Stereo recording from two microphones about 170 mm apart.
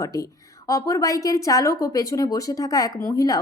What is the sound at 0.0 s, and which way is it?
A woman's voice, 20° left (ahead or behind).